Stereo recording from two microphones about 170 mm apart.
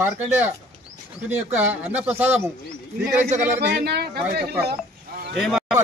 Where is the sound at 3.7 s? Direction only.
75° right (ahead or behind).